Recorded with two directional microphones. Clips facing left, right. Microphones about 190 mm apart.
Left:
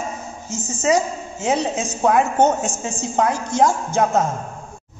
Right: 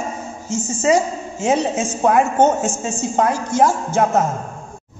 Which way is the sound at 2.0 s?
10° right (ahead or behind).